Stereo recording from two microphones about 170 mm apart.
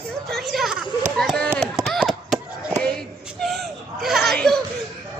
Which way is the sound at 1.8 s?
5° right (ahead or behind).